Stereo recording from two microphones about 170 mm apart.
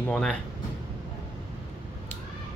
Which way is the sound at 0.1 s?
5° left (ahead or behind).